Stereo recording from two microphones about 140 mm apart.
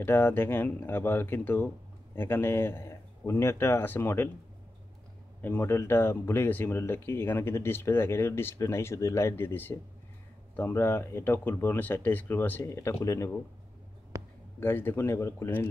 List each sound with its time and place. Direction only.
0.0 s speech: 15° left (ahead or behind)
5.4 s speech: 15° left (ahead or behind)
14.1 s a sound: 25° right (ahead or behind)
14.6 s speech: 15° left (ahead or behind)